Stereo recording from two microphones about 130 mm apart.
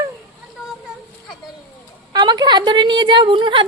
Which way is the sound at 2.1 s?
30° right (ahead or behind).